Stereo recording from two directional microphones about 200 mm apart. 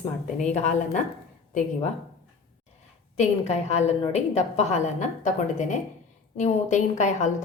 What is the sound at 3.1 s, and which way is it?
A woman's voice, 35° left (ahead or behind).